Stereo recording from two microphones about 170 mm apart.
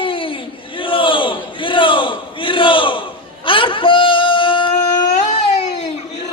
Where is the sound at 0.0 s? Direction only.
30° left (ahead or behind).